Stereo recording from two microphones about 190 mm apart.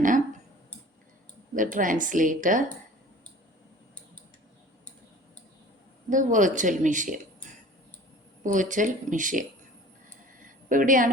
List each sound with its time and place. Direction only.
1.5 s speech: 45° right (ahead or behind)
6.1 s speech: 40° right (ahead or behind)
8.4 s speech: 40° right (ahead or behind)
10.4 s a sound: 45° right (ahead or behind)